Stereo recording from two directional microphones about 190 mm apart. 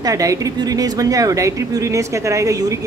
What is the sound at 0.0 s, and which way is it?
Speech, 15° right (ahead or behind).